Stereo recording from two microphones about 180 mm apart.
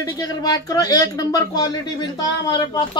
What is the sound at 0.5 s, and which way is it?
Speech, 20° left (ahead or behind).